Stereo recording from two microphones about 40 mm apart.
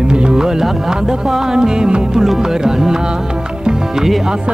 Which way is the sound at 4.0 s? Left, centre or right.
Centre.